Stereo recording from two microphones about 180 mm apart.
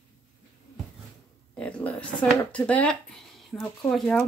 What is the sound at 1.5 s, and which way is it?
Speech, 10° left (ahead or behind).